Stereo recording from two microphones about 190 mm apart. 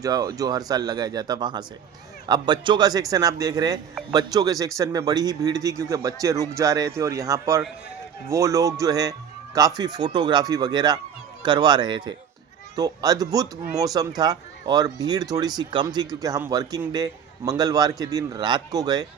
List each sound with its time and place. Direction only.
0.0 s speech: 20° right (ahead or behind)